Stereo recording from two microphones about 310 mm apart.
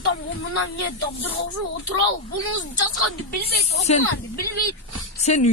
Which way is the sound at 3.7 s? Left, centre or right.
Left.